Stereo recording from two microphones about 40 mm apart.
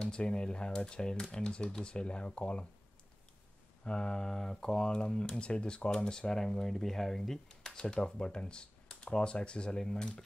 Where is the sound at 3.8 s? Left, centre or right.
Left.